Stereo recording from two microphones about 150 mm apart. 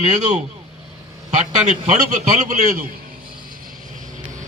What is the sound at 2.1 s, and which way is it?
Speech, 50° right (ahead or behind).